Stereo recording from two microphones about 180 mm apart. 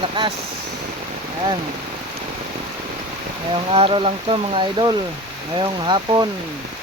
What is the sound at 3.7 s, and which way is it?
Speech, 30° right (ahead or behind).